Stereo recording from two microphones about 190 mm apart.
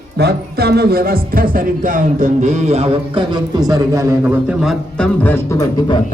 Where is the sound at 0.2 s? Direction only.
60° right (ahead or behind); by 3.2 s 30° right (ahead or behind).